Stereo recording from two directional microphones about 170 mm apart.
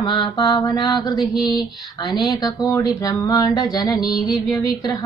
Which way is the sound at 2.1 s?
20° left (ahead or behind).